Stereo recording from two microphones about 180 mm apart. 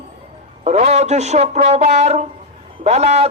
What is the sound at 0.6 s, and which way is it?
Speech, 40° right (ahead or behind).